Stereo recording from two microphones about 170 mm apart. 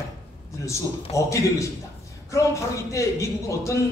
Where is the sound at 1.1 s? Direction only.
15° left (ahead or behind).